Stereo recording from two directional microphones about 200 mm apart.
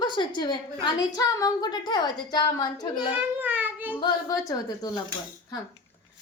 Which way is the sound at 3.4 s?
10° right (ahead or behind).